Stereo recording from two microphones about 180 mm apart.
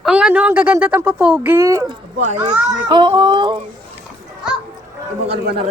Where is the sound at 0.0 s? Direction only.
5° right (ahead or behind).